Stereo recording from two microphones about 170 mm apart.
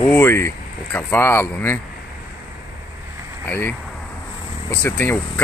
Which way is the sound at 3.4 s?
15° left (ahead or behind).